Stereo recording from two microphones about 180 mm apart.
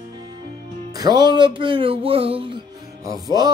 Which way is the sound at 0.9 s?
20° right (ahead or behind).